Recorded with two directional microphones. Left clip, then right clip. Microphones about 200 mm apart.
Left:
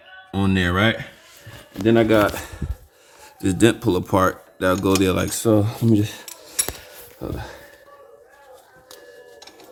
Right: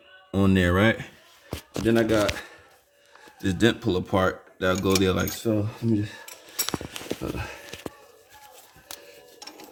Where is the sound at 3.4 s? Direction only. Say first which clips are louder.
Left 5 dB; 15° left (ahead or behind).